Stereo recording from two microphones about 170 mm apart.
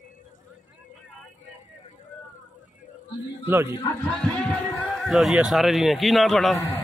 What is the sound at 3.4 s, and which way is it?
Speech, 15° right (ahead or behind).